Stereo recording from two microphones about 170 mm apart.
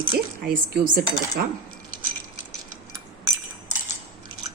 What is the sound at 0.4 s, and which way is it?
Cutlery, 60° right (ahead or behind).